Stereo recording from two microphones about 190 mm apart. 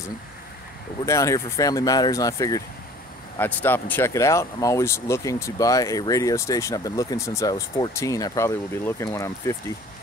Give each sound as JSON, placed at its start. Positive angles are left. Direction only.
{"t": 1.0, "sound": "speech", "side_deg": 15}